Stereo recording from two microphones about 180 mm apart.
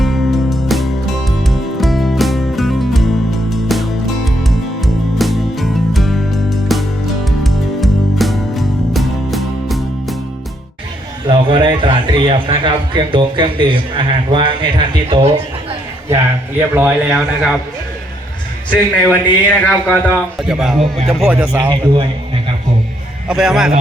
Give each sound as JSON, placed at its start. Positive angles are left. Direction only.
{"t": 0.0, "sound": "music", "side_deg": 0}
{"t": 11.3, "sound": "a man's voice", "side_deg": -25}
{"t": 16.0, "sound": "a man's voice", "side_deg": -15}
{"t": 19.0, "sound": "a man's voice", "side_deg": 10}
{"t": 20.4, "sound": "speech", "side_deg": -5}
{"t": 23.3, "sound": "speech", "side_deg": 0}